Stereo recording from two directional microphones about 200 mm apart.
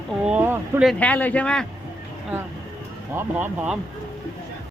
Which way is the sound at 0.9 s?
5° left (ahead or behind).